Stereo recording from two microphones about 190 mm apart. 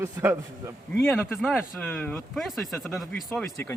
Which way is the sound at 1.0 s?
10° left (ahead or behind).